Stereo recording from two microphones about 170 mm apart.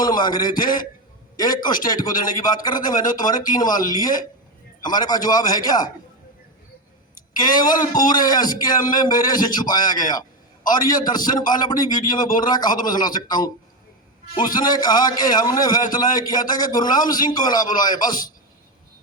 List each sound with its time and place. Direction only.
0.0 s a man's voice: 25° left (ahead or behind)
7.3 s a man's voice: 25° left (ahead or behind)